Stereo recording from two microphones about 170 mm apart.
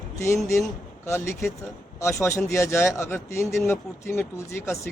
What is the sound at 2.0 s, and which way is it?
A man's voice, 15° left (ahead or behind).